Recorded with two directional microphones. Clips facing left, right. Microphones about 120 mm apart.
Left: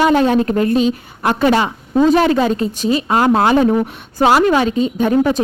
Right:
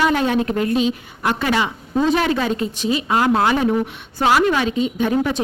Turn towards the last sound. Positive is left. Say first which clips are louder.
# left 5 dB
turn(degrees=40)  # may be behind; listen again after turning